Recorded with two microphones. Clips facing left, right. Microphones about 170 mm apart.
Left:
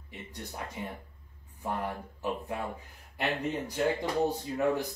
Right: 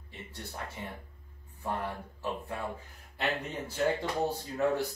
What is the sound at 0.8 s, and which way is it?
Speech, 15° left (ahead or behind).